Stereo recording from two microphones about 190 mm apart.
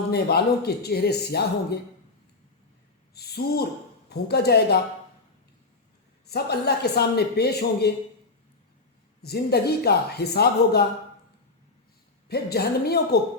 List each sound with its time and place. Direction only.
0.1 s speech: 55° left (ahead or behind)
3.2 s speech: 55° left (ahead or behind)
6.2 s speech: 55° left (ahead or behind)
9.2 s speech: 55° left (ahead or behind)
12.3 s speech: 55° left (ahead or behind)